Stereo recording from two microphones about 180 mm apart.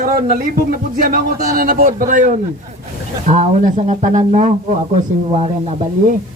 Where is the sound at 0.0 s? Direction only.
50° right (ahead or behind).